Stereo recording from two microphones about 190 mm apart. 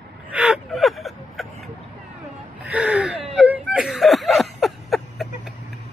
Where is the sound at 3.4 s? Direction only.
5° right (ahead or behind).